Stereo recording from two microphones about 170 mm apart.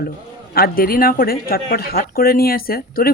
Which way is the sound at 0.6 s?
60° left (ahead or behind).